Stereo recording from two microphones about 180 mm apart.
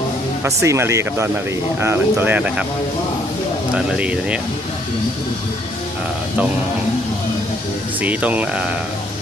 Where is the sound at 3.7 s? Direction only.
5° right (ahead or behind).